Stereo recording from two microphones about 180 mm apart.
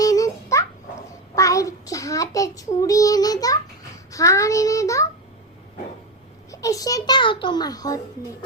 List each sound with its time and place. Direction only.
0.0 s babbling: 20° left (ahead or behind)
1.4 s child singing: 20° left (ahead or behind)
6.5 s child singing: 20° left (ahead or behind)